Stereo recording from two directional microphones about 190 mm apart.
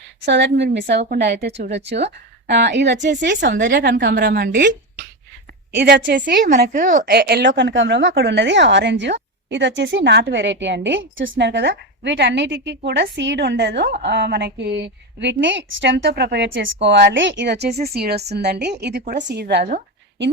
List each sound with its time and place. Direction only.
0.2 s a woman's voice: 65° right (ahead or behind)
5.7 s a woman's voice: 65° right (ahead or behind)
6.1 s a woman's voice: 50° right (ahead or behind)